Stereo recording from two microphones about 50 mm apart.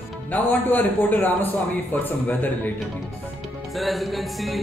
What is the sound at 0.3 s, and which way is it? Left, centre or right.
A man's voice, left.